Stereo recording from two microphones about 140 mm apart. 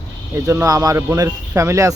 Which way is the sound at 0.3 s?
20° right (ahead or behind).